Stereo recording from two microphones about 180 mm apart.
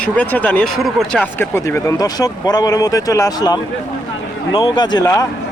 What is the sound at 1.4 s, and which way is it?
Speech, 15° left (ahead or behind).